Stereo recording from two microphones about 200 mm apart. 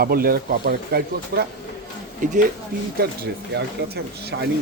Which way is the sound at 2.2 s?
40° right (ahead or behind).